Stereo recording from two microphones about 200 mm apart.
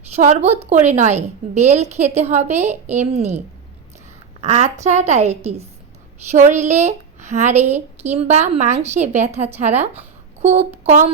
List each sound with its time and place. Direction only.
0.2 s a woman's voice: 35° right (ahead or behind)
4.4 s a woman's voice: 35° right (ahead or behind)